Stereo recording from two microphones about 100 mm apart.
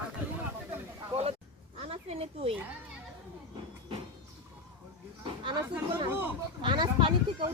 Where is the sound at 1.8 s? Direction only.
85° right.